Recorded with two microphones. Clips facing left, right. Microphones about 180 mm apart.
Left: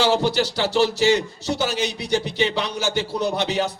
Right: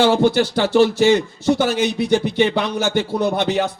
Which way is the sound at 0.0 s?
55° right (ahead or behind).